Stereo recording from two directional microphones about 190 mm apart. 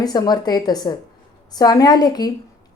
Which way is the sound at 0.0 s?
20° left (ahead or behind).